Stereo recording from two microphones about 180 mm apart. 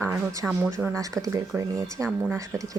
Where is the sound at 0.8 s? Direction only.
Centre (ahead or behind).